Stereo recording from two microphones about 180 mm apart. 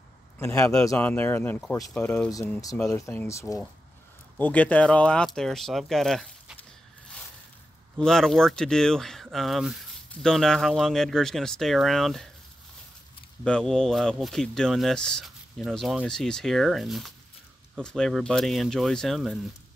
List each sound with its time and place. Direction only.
0.6 s speech: 5° left (ahead or behind)
8.0 s speech: centre (ahead or behind)
13.4 s speech: 5° left (ahead or behind)